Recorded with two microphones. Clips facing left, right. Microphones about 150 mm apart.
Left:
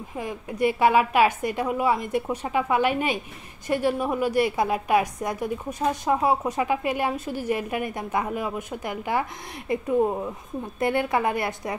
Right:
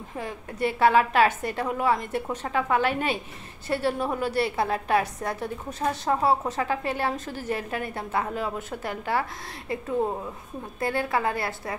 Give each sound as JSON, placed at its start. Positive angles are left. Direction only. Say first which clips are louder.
{"t": 0.2, "sound": "a woman's voice", "louder": "left 4 dB", "side_deg": 15}